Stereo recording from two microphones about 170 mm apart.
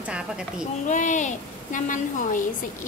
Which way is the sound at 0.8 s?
50° left (ahead or behind).